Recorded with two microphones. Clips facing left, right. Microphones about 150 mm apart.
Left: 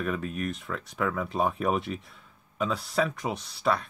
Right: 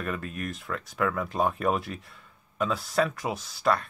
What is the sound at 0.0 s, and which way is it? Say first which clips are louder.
Speech: left 3 dB; centre (ahead or behind).